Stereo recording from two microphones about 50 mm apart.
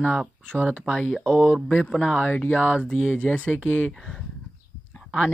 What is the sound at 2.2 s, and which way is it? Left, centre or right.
Speech, left.